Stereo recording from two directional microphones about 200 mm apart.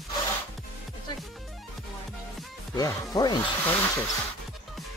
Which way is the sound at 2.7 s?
20° left (ahead or behind).